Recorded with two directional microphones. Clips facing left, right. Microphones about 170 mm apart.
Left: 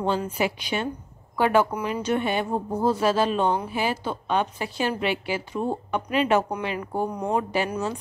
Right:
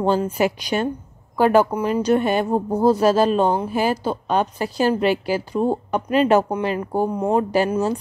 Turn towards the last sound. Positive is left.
turn(degrees=-35)  # may be behind; listen again after turning